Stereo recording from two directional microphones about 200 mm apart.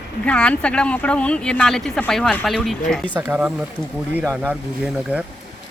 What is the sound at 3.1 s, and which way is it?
Speech, 10° right (ahead or behind).